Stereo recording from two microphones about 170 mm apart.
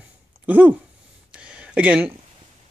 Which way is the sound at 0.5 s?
10° right (ahead or behind).